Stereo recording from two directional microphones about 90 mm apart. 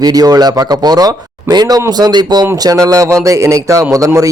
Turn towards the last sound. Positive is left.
turn(degrees=-40)  # may be behind; listen again after turning